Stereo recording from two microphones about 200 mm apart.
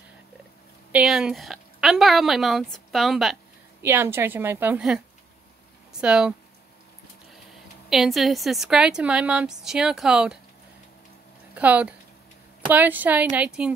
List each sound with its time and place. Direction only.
0.9 s a woman's voice: 5° right (ahead or behind)
3.8 s a woman's voice: 10° right (ahead or behind)
7.9 s a woman's voice: centre (ahead or behind)
11.5 s a woman's voice: 5° right (ahead or behind)